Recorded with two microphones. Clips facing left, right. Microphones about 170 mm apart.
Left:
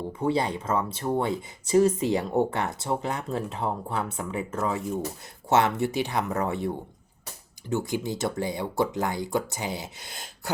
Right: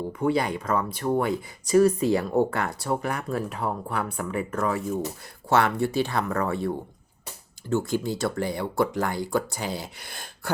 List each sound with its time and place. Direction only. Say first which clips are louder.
0.1 s speech: right 1 dB; 25° left (ahead or behind)